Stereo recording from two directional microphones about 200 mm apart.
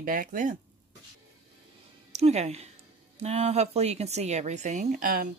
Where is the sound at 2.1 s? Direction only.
35° right (ahead or behind).